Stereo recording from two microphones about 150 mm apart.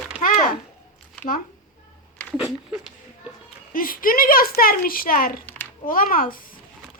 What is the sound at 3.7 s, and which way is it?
A child's voice, 70° left (ahead or behind).